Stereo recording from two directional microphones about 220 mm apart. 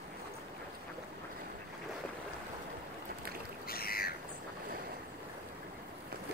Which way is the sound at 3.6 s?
45° left (ahead or behind).